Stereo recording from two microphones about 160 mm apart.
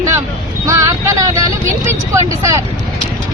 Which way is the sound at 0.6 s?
20° right (ahead or behind).